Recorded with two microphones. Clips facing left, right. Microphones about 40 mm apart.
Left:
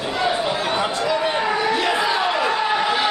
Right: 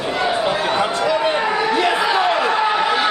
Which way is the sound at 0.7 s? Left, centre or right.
Centre.